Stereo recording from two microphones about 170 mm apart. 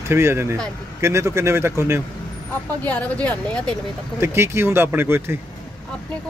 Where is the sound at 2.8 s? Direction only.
10° left (ahead or behind).